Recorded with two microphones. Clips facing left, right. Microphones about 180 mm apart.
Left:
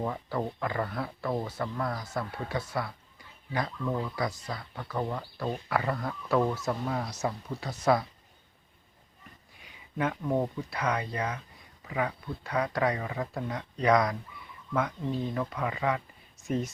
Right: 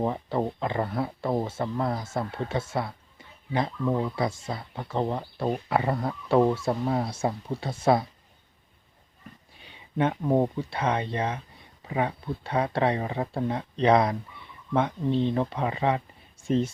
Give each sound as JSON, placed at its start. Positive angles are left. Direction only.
{"t": 0.0, "sound": "speech", "side_deg": -25}
{"t": 9.6, "sound": "speech", "side_deg": -30}